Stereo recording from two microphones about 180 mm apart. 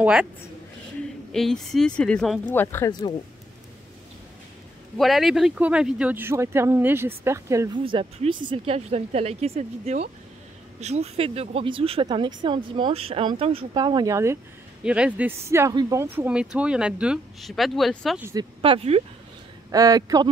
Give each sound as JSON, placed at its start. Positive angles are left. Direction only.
{"t": 0.0, "sound": "speech", "side_deg": -5}
{"t": 1.3, "sound": "speech", "side_deg": 0}
{"t": 4.9, "sound": "speech", "side_deg": 0}
{"t": 7.8, "sound": "speech", "side_deg": -30}
{"t": 18.2, "sound": "speech", "side_deg": -20}
{"t": 19.7, "sound": "speech", "side_deg": -20}